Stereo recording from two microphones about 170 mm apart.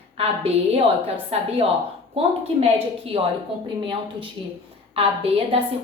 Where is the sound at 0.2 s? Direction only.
35° right (ahead or behind).